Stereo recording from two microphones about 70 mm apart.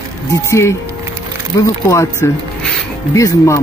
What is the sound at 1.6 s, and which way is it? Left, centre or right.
Speech, left.